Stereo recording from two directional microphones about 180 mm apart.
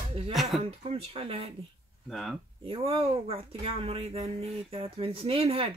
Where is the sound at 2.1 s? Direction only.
Centre (ahead or behind).